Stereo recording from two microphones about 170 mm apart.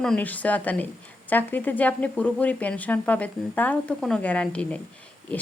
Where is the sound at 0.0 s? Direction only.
5° left (ahead or behind).